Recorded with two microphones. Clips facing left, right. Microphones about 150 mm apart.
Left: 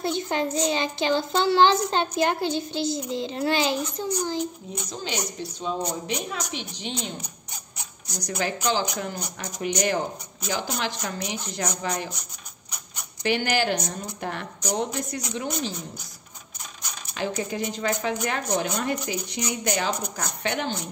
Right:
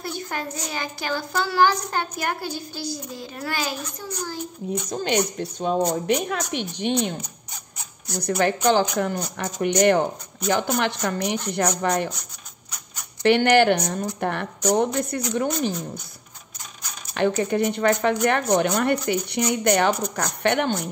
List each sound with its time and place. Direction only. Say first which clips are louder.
0.0 s a child's voice: left 5 dB; 20° left (ahead or behind)
4.8 s speech: right 8 dB; 55° right (ahead or behind)
13.2 s speech: right 8 dB; 60° right (ahead or behind)
17.1 s speech: right 7 dB; 60° right (ahead or behind)